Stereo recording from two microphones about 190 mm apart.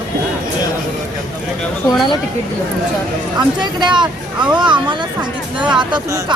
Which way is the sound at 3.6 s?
25° right (ahead or behind).